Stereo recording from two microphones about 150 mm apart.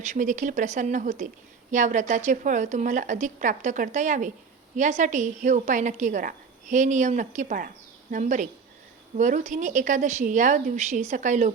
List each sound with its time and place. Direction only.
0.0 s a woman's voice: 55° right (ahead or behind)